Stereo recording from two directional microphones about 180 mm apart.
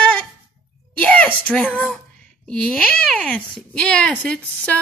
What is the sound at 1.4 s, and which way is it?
Speech, 5° left (ahead or behind).